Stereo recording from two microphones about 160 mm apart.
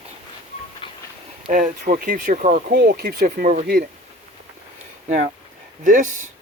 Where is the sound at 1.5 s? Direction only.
55° right (ahead or behind).